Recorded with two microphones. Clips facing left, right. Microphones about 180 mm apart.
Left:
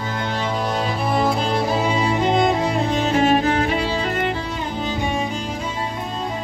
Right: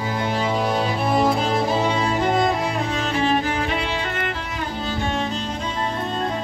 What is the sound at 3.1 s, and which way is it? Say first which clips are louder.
Music: left 4 dB; 45° left (ahead or behind).